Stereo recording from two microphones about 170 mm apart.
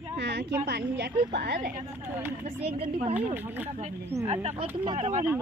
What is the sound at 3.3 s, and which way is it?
Speech, 10° right (ahead or behind).